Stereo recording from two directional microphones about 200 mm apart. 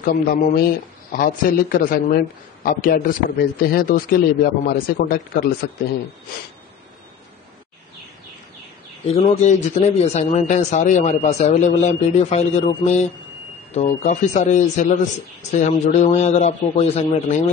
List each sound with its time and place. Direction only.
0.0 s a man's voice: 45° left (ahead or behind)
9.0 s a man's voice: 30° left (ahead or behind)